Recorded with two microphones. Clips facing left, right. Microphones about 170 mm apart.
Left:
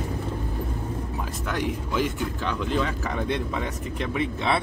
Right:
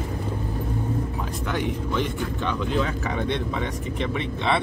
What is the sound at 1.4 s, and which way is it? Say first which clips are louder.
Speech: right 2 dB; centre (ahead or behind).